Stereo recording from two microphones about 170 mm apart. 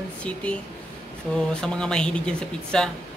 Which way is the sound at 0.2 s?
5° left (ahead or behind).